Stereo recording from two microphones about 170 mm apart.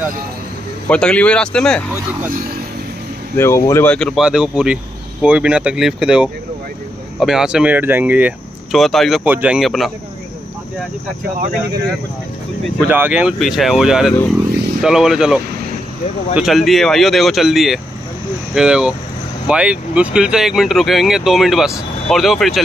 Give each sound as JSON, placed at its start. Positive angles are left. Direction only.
{"t": 0.8, "sound": "speech", "side_deg": 5}
{"t": 3.3, "sound": "speech", "side_deg": 15}
{"t": 12.9, "sound": "speech", "side_deg": -10}